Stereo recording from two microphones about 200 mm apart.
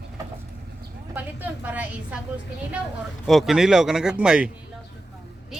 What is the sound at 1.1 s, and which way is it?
A woman's voice, 10° right (ahead or behind).